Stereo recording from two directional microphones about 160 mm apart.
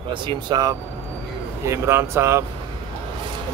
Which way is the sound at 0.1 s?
30° right (ahead or behind).